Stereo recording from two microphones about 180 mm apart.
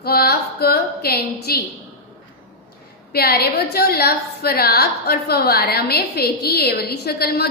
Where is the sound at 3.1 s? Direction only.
60° left (ahead or behind).